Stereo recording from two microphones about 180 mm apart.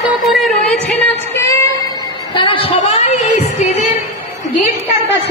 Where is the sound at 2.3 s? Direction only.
30° left (ahead or behind).